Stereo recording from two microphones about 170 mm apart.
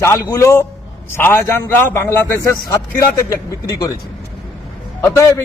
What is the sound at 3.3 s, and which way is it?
Speech, 20° left (ahead or behind).